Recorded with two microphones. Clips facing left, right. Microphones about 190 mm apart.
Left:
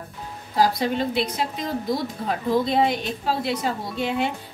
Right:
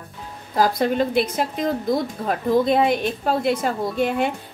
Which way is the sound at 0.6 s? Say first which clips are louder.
Right 2 dB; 50° right (ahead or behind).